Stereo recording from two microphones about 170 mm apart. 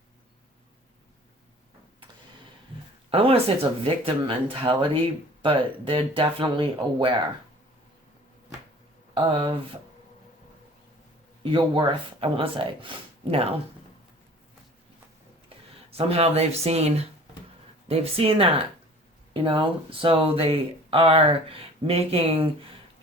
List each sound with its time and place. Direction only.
3.1 s speech: 35° right (ahead or behind)
9.1 s speech: 30° right (ahead or behind)
11.5 s speech: 30° right (ahead or behind)
15.4 s speech: 35° right (ahead or behind)